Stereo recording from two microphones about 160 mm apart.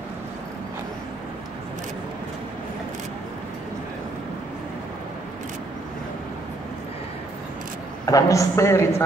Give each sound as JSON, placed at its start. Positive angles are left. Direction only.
{"t": 8.0, "sound": "a man's voice", "side_deg": 20}